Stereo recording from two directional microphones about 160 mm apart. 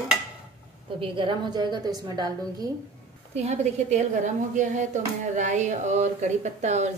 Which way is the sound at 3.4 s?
45° right (ahead or behind).